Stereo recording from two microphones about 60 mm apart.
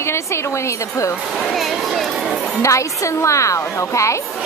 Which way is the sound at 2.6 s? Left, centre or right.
Left.